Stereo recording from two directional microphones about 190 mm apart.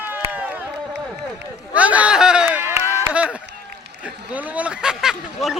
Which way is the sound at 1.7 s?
5° right (ahead or behind).